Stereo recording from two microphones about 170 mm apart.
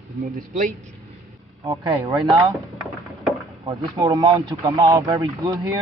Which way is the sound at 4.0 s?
25° right (ahead or behind).